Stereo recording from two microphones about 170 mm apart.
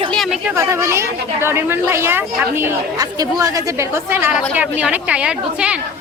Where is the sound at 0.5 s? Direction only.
15° right (ahead or behind).